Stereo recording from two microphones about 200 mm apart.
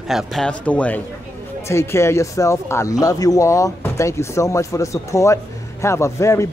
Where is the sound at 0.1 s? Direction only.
Centre (ahead or behind).